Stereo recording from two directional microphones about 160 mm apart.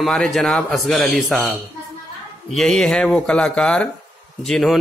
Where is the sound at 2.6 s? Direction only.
5° left (ahead or behind).